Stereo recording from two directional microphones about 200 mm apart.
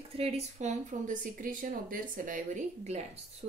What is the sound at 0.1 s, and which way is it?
Speech, 30° right (ahead or behind).